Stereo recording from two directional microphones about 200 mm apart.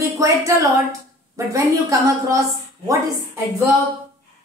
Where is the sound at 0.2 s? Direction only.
15° right (ahead or behind).